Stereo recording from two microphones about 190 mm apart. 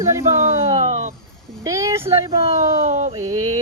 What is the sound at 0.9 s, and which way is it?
Speech, 35° right (ahead or behind).